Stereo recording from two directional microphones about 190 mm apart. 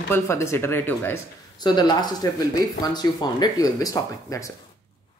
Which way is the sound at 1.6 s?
20° left (ahead or behind).